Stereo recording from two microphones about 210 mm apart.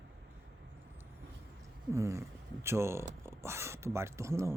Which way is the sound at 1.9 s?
15° right (ahead or behind).